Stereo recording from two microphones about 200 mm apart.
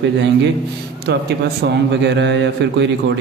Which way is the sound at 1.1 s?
55° right (ahead or behind).